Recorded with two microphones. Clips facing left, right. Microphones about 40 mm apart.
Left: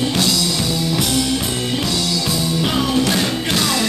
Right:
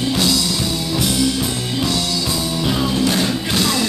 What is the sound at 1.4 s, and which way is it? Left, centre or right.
Music, left.